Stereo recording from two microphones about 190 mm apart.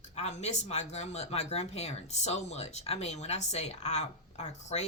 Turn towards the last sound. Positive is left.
turn(degrees=35)  # may be behind; listen again after turning